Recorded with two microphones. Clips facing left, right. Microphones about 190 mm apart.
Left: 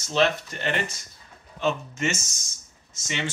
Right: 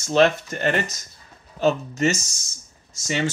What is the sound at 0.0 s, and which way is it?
Speech, 50° right (ahead or behind).